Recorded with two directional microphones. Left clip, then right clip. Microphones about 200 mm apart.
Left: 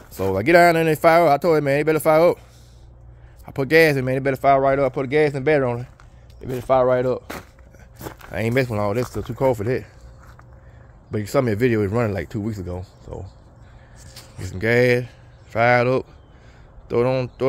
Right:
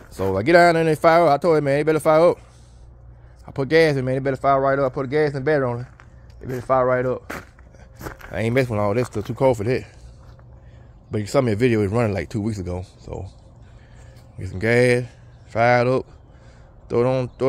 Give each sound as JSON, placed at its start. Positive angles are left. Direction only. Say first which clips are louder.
{"t": 0.2, "sound": "a man's voice", "louder": "even", "side_deg": 5}
{"t": 3.4, "sound": "a man's voice", "louder": "left 1 dB", "side_deg": 15}
{"t": 8.0, "sound": "speech", "louder": "even", "side_deg": 0}
{"t": 11.1, "sound": "speech", "louder": "even", "side_deg": 0}
{"t": 14.4, "sound": "speech", "louder": "even", "side_deg": 0}